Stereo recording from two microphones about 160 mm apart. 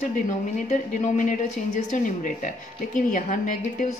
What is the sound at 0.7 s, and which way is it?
A woman's voice, 45° left (ahead or behind).